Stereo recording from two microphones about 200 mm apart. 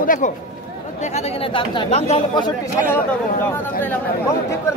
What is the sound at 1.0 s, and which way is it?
Speech, 35° left (ahead or behind).